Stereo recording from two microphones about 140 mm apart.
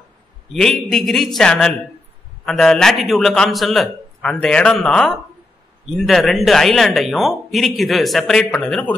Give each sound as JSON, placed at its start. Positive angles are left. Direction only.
{"t": 0.5, "sound": "speech", "side_deg": 5}